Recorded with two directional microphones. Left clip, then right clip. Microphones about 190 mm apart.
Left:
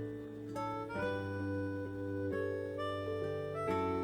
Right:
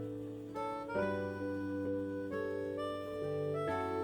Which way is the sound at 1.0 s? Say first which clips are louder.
Right 1 dB; 30° right (ahead or behind).